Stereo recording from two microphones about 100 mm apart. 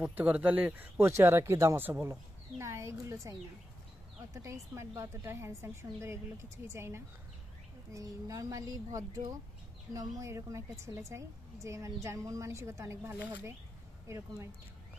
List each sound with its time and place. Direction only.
0.0 s a woman's voice: 15° right (ahead or behind)